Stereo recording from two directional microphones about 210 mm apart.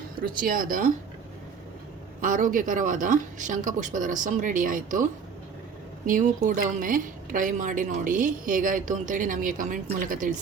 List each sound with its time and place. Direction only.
0.2 s speech: 45° right (ahead or behind)
2.2 s a woman's voice: 40° right (ahead or behind)
6.1 s a woman's voice: 40° right (ahead or behind)